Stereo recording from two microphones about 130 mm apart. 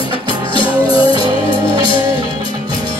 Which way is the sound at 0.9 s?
35° right (ahead or behind).